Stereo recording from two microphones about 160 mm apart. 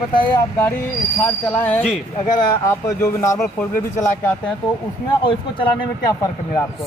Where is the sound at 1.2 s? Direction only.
10° left (ahead or behind).